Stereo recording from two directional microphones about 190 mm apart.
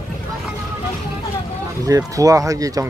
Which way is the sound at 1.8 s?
20° right (ahead or behind).